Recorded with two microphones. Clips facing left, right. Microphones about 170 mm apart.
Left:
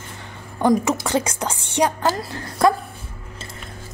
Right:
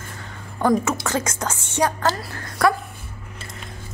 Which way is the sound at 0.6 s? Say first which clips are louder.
Left 2 dB; 15° left (ahead or behind).